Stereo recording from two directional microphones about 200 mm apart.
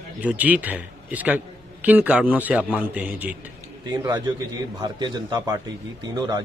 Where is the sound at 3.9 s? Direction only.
20° right (ahead or behind).